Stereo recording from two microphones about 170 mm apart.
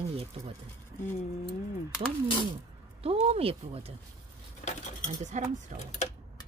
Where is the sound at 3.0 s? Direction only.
35° right (ahead or behind).